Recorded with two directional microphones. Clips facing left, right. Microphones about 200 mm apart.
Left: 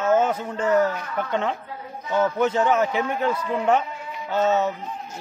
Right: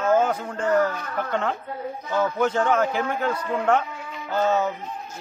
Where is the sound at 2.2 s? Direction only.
5° left (ahead or behind).